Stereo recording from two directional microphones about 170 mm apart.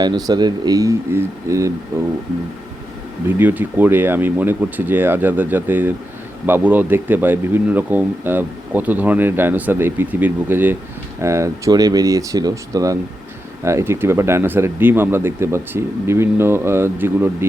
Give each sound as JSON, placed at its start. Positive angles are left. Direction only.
{"t": 0.0, "sound": "speech", "side_deg": -25}
{"t": 3.2, "sound": "speech", "side_deg": -10}